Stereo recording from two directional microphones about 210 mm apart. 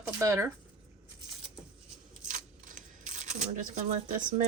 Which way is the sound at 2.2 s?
40° right (ahead or behind).